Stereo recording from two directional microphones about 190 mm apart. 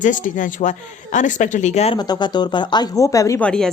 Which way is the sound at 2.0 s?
20° left (ahead or behind).